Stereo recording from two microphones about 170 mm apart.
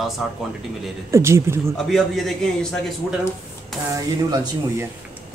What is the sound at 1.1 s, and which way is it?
Speech, 15° right (ahead or behind).